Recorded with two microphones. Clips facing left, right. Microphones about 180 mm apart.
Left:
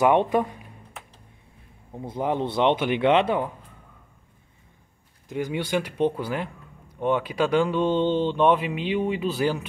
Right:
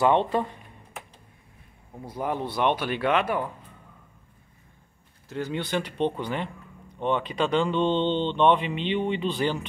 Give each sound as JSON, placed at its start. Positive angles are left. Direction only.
{"t": 0.0, "sound": "speech", "side_deg": 15}
{"t": 2.0, "sound": "speech", "side_deg": 20}
{"t": 5.3, "sound": "speech", "side_deg": 10}